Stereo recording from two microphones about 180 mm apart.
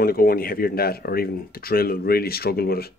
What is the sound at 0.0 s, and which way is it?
Speech, 55° left (ahead or behind).